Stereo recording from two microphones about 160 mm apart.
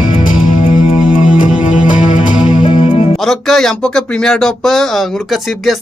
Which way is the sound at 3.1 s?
Centre (ahead or behind).